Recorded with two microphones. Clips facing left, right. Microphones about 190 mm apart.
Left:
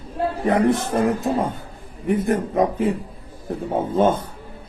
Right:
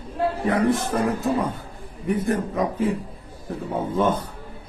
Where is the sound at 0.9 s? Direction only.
45° left (ahead or behind).